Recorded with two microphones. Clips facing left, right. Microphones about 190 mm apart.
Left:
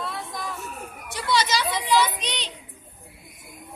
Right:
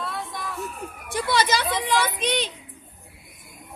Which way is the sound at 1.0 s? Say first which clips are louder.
Right 2 dB; 55° right (ahead or behind).